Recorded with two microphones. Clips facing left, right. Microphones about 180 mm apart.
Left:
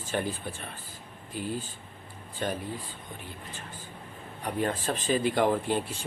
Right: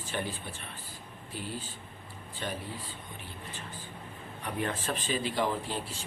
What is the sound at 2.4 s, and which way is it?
Speech, 45° left (ahead or behind).